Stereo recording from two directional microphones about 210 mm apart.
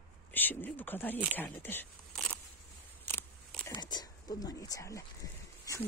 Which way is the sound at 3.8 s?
20° left (ahead or behind).